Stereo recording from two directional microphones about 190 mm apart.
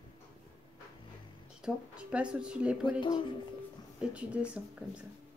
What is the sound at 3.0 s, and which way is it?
Speech, 25° left (ahead or behind).